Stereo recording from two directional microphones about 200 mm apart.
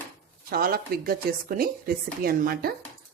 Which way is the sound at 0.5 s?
50° right (ahead or behind).